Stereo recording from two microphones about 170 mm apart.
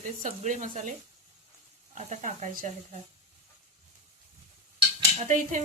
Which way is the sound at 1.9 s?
45° right (ahead or behind).